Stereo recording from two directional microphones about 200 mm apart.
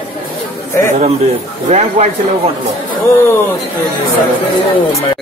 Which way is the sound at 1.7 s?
35° right (ahead or behind).